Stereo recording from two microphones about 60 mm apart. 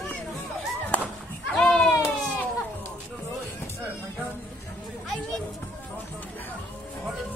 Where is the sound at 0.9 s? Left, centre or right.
Left.